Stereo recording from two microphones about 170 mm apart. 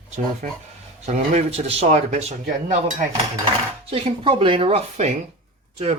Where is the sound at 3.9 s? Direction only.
30° right (ahead or behind).